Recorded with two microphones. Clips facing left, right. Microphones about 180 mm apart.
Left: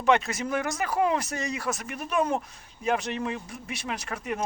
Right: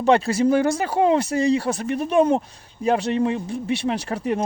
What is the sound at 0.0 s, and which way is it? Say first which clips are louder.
Speech: right 7 dB; 30° right (ahead or behind).